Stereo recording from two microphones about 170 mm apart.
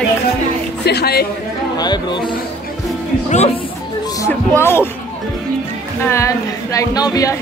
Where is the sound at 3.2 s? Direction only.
40° left (ahead or behind).